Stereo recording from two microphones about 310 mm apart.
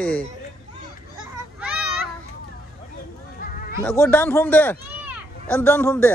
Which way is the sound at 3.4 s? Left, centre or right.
Left.